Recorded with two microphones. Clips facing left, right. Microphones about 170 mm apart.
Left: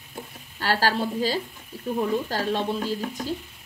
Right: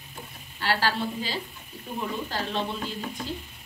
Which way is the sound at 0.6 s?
45° left (ahead or behind).